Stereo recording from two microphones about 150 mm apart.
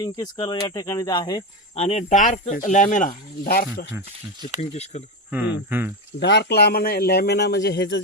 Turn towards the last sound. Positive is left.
turn(degrees=90)